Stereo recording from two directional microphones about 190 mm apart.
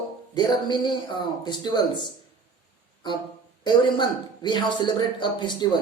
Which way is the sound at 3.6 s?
25° left (ahead or behind).